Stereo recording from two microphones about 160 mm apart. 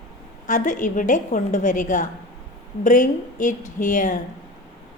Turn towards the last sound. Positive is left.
turn(degrees=55)  # may be behind; listen again after turning